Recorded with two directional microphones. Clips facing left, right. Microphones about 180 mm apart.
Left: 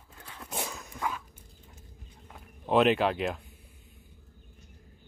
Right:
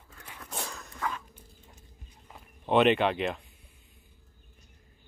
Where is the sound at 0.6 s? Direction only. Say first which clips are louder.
Left 2 dB; 20° left (ahead or behind).